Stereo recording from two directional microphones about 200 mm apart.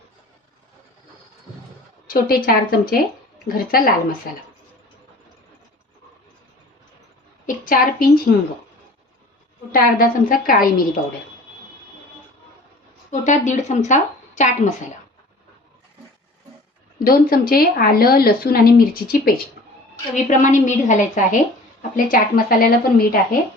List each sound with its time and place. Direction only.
2.0 s speech: 45° left (ahead or behind)
7.4 s a sound: 45° left (ahead or behind)
9.7 s speech: 45° left (ahead or behind)
13.1 s a woman's voice: 40° left (ahead or behind)
17.0 s a woman's voice: 45° left (ahead or behind)